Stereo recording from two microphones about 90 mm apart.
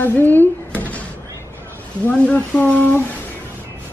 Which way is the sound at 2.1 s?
15° left (ahead or behind).